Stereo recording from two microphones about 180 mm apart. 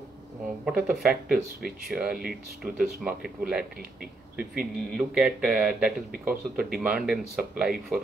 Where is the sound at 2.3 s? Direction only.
55° right (ahead or behind).